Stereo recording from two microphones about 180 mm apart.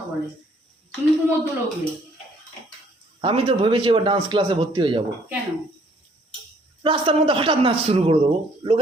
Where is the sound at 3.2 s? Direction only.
30° right (ahead or behind).